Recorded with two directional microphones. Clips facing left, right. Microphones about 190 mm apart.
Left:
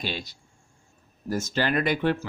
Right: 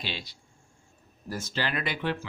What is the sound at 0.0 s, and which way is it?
Speech, 45° left (ahead or behind).